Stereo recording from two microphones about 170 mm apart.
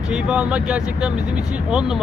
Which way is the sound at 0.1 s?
5° right (ahead or behind).